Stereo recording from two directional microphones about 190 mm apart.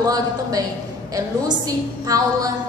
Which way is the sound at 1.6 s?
20° right (ahead or behind).